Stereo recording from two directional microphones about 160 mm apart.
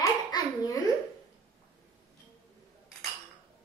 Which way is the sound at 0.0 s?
20° left (ahead or behind).